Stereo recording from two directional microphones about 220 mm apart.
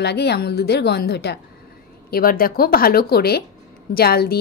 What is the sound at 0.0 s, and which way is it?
A woman's voice, 50° left (ahead or behind).